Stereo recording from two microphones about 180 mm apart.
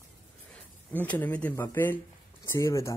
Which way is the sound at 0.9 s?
10° left (ahead or behind).